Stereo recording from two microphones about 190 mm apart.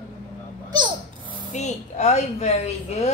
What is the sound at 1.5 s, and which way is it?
A woman's voice, 35° left (ahead or behind).